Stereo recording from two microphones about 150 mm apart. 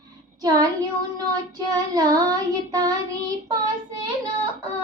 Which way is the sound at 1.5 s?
25° right (ahead or behind).